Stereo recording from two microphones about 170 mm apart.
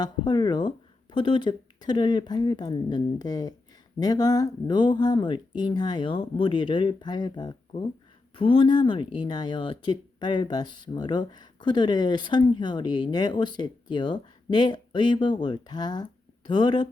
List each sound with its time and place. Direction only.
0.0 s speech: 25° left (ahead or behind)